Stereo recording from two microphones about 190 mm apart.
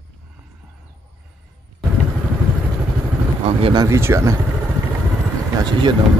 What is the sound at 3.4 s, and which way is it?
Speech, 30° right (ahead or behind).